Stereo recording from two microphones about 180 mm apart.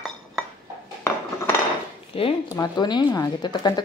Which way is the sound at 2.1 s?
30° left (ahead or behind).